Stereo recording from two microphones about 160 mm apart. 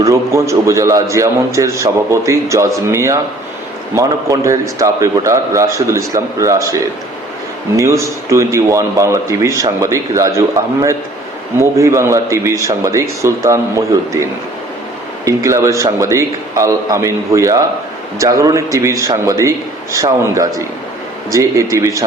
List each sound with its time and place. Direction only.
0.0 s a man's voice: 20° right (ahead or behind)
7.8 s a man's voice: 20° right (ahead or behind)